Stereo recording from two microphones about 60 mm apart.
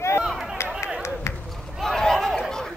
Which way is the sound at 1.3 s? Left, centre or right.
Left.